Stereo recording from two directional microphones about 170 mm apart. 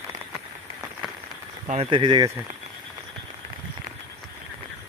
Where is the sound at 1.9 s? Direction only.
25° right (ahead or behind).